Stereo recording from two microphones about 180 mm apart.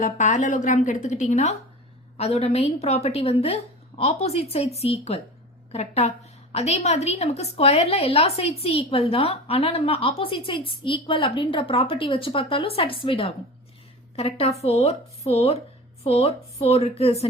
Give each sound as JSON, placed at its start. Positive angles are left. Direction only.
{"t": 0.0, "sound": "a woman's voice", "side_deg": 40}